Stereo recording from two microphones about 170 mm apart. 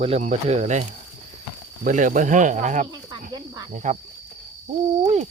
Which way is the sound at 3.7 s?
45° right (ahead or behind).